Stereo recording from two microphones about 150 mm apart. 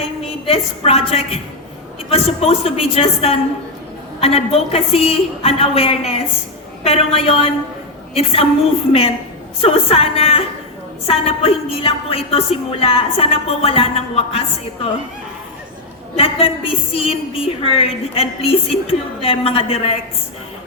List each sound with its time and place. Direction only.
0.0 s a woman's voice: 40° left (ahead or behind)
16.1 s a woman's voice: 40° left (ahead or behind)